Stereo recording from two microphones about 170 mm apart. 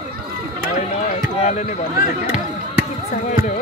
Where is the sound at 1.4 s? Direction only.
40° left (ahead or behind).